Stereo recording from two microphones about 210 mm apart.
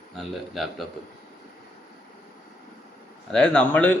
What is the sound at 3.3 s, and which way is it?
Speech, 5° left (ahead or behind).